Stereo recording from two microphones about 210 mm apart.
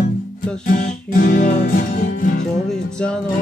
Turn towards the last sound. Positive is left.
turn(degrees=5)  # may be behind; listen again after turning